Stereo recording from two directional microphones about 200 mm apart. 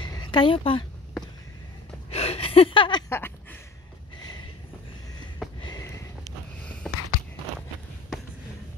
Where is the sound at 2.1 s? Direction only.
30° left (ahead or behind).